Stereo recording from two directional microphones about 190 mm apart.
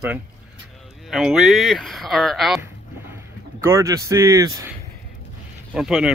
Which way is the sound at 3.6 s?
15° right (ahead or behind).